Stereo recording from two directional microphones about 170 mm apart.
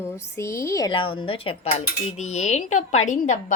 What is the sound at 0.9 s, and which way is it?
A woman's voice, 30° left (ahead or behind).